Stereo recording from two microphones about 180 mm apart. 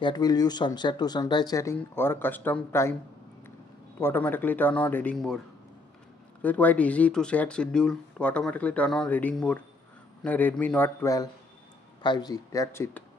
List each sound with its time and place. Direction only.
0.0 s speech: 20° left (ahead or behind)
4.0 s speech: 10° left (ahead or behind)
6.4 s speech: 10° left (ahead or behind)